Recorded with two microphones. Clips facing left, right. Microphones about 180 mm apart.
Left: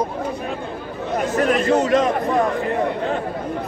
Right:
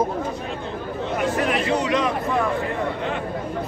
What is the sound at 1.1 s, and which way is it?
Speech, 40° left (ahead or behind).